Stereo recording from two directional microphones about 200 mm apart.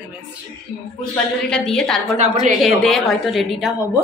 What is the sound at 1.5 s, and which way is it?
Speech, 5° left (ahead or behind).